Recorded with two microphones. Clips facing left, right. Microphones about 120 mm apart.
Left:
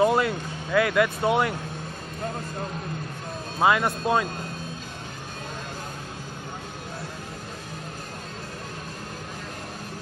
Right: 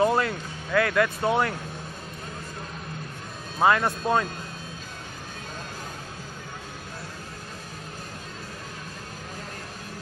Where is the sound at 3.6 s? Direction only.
10° left (ahead or behind).